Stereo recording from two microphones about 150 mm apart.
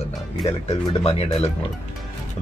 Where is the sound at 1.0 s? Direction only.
40° left (ahead or behind).